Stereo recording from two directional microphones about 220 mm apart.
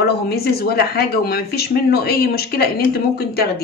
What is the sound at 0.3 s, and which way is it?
Speech, 45° left (ahead or behind).